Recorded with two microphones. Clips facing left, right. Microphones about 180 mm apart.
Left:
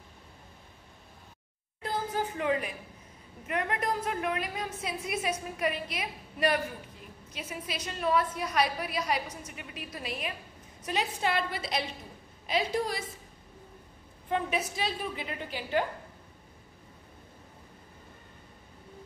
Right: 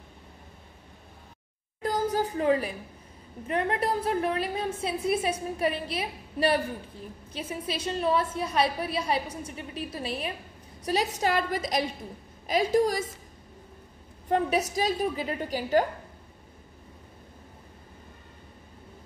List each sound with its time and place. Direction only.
1.8 s a sound: 40° right (ahead or behind)
3.4 s a woman's voice: 30° right (ahead or behind)
14.3 s a woman's voice: 40° right (ahead or behind)